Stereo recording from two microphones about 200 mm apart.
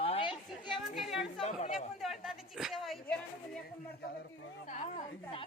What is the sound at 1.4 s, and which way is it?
Chatter, 30° left (ahead or behind).